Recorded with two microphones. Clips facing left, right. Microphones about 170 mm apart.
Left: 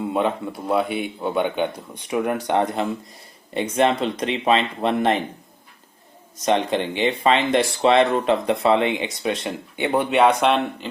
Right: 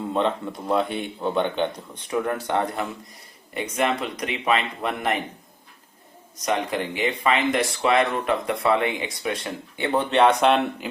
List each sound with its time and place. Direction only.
0.0 s speech: 10° left (ahead or behind); by 5.2 s 30° left (ahead or behind)
6.4 s speech: 25° left (ahead or behind); by 10.8 s centre (ahead or behind)